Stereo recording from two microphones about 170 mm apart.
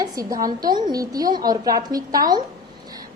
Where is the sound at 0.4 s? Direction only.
25° right (ahead or behind).